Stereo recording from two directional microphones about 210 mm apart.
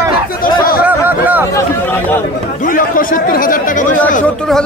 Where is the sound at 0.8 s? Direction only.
10° right (ahead or behind).